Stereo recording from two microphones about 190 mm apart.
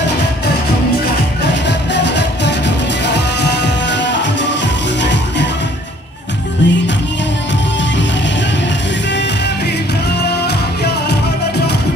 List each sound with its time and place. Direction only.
1.5 s music: 65° left (ahead or behind)
6.6 s music: 70° left (ahead or behind)
10.4 s music: 60° left (ahead or behind)